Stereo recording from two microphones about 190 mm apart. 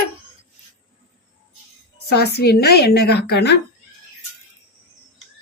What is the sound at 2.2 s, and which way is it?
A woman's voice, 60° left (ahead or behind).